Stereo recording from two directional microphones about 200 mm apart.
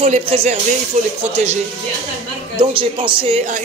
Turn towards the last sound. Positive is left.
turn(degrees=-25)  # may be behind; listen again after turning